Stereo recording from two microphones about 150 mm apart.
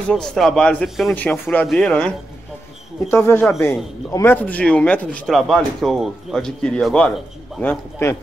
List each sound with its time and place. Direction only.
0.1 s speech: 5° left (ahead or behind)
1.1 s a man's voice: 10° left (ahead or behind)